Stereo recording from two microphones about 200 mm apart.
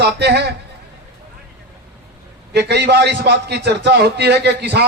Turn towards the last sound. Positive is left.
turn(degrees=-55)  # may be behind; listen again after turning